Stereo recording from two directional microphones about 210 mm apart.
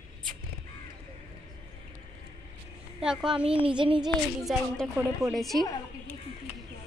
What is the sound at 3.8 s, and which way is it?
Speech, 25° right (ahead or behind).